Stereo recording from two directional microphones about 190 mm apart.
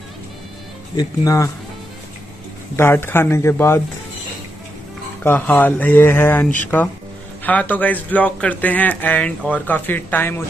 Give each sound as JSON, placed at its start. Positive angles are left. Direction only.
{"t": 0.9, "sound": "speech", "side_deg": 15}
{"t": 2.7, "sound": "speech", "side_deg": 10}
{"t": 5.2, "sound": "speech", "side_deg": 10}